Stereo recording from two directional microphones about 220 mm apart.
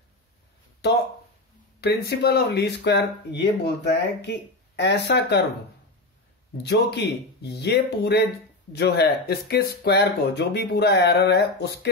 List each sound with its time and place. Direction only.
1.8 s speech: 45° left (ahead or behind)
6.6 s speech: 50° left (ahead or behind)